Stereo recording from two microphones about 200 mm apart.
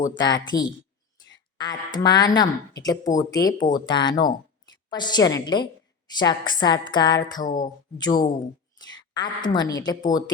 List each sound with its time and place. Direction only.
0.2 s a woman's voice: 20° left (ahead or behind)